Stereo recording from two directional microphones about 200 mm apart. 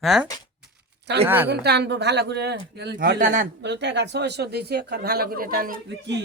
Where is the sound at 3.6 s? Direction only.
60° right (ahead or behind).